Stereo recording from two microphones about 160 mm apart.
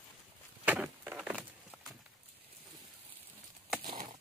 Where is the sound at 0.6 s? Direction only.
10° right (ahead or behind).